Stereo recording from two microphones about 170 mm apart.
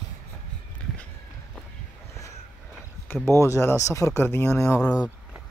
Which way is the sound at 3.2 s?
15° left (ahead or behind).